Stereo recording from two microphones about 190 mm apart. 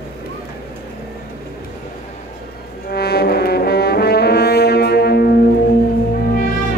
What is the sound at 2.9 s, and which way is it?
Brass instrument, 55° left (ahead or behind).